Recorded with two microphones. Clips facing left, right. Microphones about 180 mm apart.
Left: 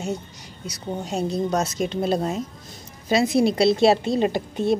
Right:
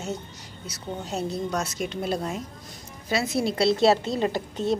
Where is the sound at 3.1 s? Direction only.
15° left (ahead or behind).